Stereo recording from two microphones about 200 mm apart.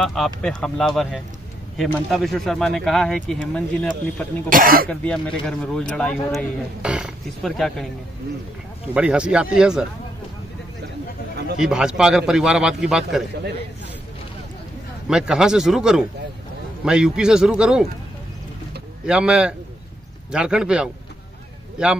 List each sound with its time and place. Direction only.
0.0 s speech: centre (ahead or behind)
4.5 s speech: 45° right (ahead or behind)
4.8 s speech: 5° left (ahead or behind)
8.9 s speech: 5° right (ahead or behind)
11.5 s speech: 5° right (ahead or behind)
15.0 s speech: 5° right (ahead or behind)
19.0 s speech: 5° right (ahead or behind)